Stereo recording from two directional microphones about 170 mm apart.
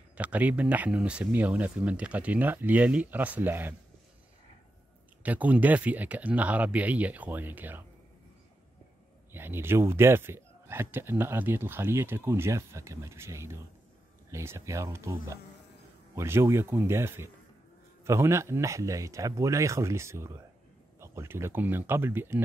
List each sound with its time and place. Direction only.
0.1 s a man's voice: 10° right (ahead or behind)
5.2 s a man's voice: 10° right (ahead or behind)
9.3 s a man's voice: 15° right (ahead or behind)